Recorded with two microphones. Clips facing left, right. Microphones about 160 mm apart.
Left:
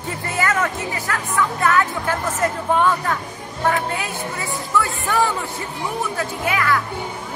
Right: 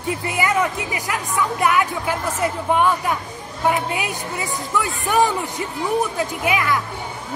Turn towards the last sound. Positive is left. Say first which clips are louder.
# even
turn(degrees=-20)  # may be behind; listen again after turning